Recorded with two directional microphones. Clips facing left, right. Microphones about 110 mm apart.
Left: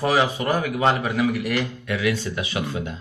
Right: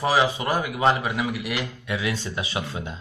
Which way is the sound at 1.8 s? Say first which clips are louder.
Left 4 dB; 25° right (ahead or behind).